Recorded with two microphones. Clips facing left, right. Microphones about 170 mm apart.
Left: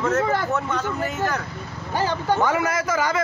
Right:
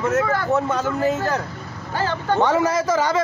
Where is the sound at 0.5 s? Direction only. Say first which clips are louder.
Right 4 dB; 40° right (ahead or behind).